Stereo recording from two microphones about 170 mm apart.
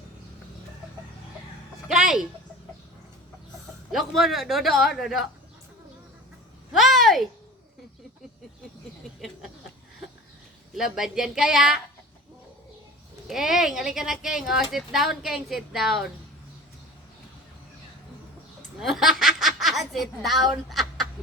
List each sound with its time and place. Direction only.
1.9 s speech: 5° right (ahead or behind)
3.9 s speech: centre (ahead or behind)
6.7 s a sound: centre (ahead or behind)
10.8 s speech: centre (ahead or behind)
13.2 s speech: centre (ahead or behind)
18.8 s speech: centre (ahead or behind)